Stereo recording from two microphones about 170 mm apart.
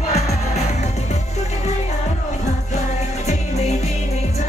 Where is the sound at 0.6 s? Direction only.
40° left (ahead or behind).